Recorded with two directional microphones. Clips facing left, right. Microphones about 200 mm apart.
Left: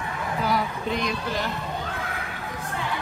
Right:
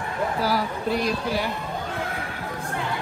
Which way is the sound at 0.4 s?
5° right (ahead or behind).